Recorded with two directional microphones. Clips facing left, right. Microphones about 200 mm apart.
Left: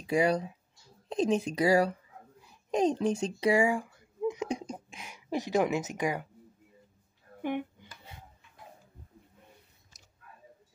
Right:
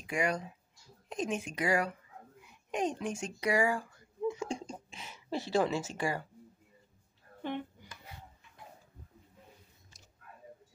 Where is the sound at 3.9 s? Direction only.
15° left (ahead or behind).